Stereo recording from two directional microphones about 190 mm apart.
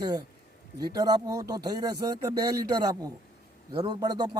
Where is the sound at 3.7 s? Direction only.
25° right (ahead or behind).